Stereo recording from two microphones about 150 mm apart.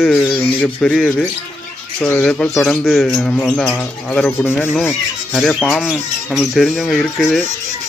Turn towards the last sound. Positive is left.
turn(degrees=0)  # may be behind; listen again after turning